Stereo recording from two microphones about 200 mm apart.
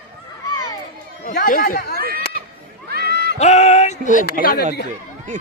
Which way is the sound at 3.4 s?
35° left (ahead or behind).